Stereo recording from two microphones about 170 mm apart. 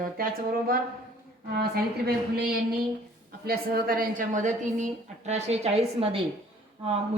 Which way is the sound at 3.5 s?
60° right (ahead or behind).